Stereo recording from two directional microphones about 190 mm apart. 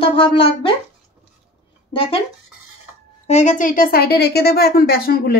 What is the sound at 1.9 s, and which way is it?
Speech, 30° left (ahead or behind).